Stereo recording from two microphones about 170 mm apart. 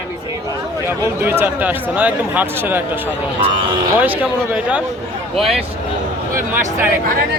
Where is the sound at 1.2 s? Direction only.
15° right (ahead or behind).